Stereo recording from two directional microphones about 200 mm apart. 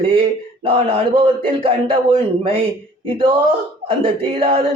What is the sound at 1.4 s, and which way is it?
Speech, 25° right (ahead or behind).